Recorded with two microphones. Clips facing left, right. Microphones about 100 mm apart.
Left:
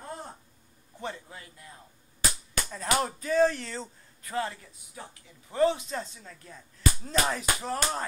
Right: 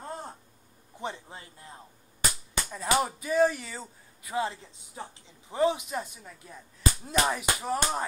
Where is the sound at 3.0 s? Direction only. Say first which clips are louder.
Left 2 dB; 10° right (ahead or behind).